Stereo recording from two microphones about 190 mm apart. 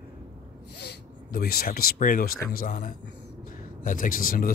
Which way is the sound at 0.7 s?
55° left (ahead or behind).